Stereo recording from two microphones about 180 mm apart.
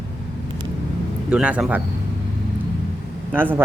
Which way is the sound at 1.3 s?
5° right (ahead or behind).